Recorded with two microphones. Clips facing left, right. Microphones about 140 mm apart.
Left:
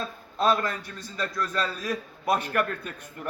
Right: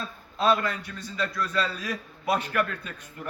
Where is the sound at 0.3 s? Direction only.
45° left (ahead or behind).